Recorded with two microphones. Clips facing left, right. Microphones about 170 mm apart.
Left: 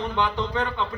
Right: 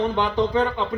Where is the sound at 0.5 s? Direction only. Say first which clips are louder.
Right 5 dB; 30° right (ahead or behind).